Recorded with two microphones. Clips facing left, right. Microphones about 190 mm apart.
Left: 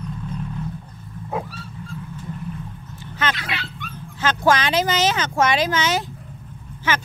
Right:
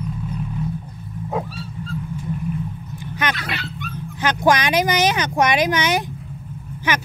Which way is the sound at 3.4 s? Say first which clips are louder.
Right 1 dB; 40° right (ahead or behind).